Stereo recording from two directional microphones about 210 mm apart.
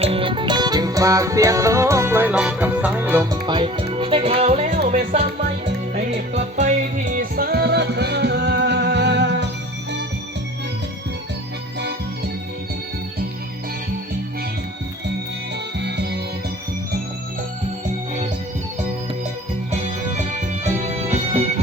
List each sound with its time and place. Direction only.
0.0 s music: 25° right (ahead or behind); by 9.5 s 55° right (ahead or behind)
15.8 s music: 55° right (ahead or behind)
19.7 s music: 35° right (ahead or behind)